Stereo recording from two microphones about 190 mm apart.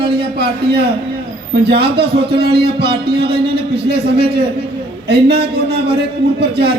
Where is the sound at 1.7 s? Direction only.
55° right (ahead or behind).